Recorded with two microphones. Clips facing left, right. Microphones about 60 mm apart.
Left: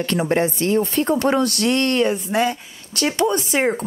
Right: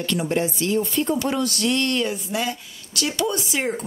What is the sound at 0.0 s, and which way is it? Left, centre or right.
Speech, left.